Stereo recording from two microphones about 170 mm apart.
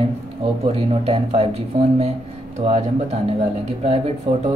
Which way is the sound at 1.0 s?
35° right (ahead or behind).